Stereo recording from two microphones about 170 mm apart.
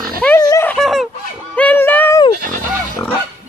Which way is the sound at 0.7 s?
Centre (ahead or behind).